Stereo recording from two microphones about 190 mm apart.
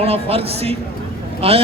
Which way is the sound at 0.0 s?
30° right (ahead or behind).